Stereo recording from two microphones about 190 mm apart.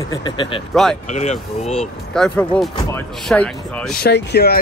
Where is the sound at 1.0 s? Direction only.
35° left (ahead or behind).